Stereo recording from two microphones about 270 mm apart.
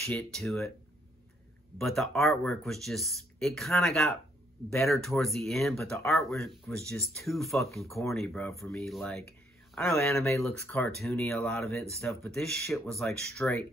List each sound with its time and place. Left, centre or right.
0.0 s speech: centre
1.8 s speech: centre